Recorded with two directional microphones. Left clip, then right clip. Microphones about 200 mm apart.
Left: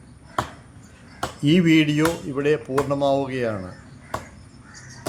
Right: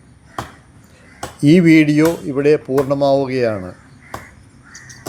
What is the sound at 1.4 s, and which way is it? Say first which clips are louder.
Speech: right 7 dB; 25° right (ahead or behind).